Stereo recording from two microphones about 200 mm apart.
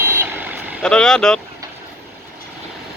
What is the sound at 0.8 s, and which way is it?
Speech, 5° left (ahead or behind).